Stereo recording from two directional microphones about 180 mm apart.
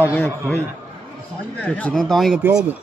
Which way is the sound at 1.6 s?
10° left (ahead or behind).